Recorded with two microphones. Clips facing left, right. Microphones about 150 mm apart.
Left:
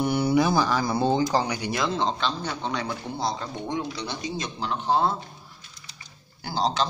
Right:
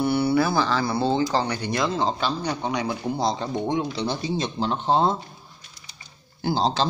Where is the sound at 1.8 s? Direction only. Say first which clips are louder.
Right 2 dB; centre (ahead or behind); by 5.1 s 25° right (ahead or behind).